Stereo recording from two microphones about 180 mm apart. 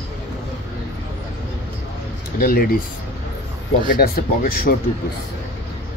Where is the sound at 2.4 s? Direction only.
55° left (ahead or behind).